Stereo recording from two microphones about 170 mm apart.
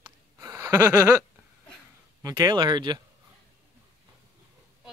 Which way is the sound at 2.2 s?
25° right (ahead or behind).